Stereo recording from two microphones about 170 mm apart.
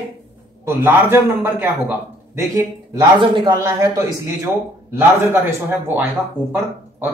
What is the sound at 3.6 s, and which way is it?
Speech, 15° right (ahead or behind).